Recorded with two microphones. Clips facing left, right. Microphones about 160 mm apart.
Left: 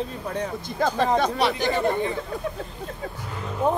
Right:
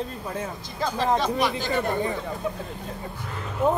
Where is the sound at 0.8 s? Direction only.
55° left (ahead or behind).